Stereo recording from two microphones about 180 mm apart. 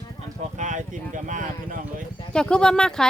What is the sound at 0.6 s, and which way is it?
Speech, 45° right (ahead or behind).